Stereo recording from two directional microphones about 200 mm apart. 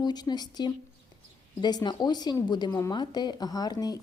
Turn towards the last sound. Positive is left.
turn(degrees=20)  # may be behind; listen again after turning